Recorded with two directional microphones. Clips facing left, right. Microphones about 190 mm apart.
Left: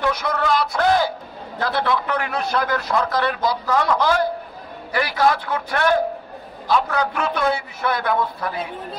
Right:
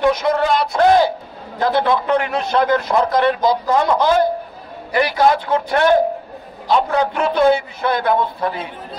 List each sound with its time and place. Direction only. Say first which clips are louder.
0.0 s a man's voice: right 6 dB; 20° right (ahead or behind)